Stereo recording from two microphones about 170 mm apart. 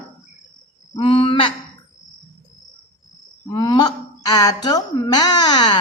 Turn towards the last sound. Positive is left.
turn(degrees=25)  # may be behind; listen again after turning